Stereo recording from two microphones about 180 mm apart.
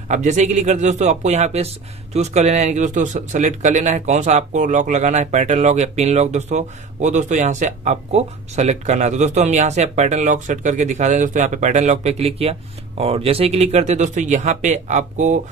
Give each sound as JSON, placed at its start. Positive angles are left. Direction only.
{"t": 0.1, "sound": "speech", "side_deg": -40}